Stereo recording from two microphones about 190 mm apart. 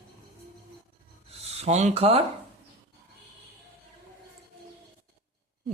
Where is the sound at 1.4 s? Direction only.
35° right (ahead or behind).